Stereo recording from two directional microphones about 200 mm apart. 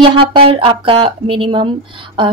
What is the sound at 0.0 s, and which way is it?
Speech, 25° right (ahead or behind).